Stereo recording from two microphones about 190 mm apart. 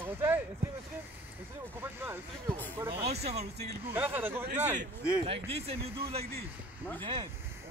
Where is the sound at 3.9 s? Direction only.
10° right (ahead or behind).